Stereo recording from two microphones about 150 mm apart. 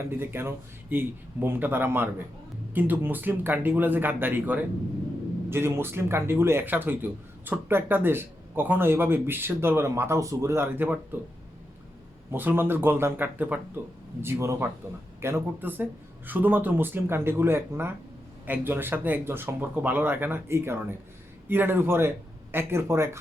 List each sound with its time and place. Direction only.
0.0 s speech: 15° right (ahead or behind)
12.3 s speech: 15° right (ahead or behind)